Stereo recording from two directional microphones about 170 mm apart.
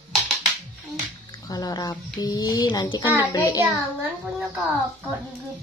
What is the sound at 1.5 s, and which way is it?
Speech, 20° left (ahead or behind).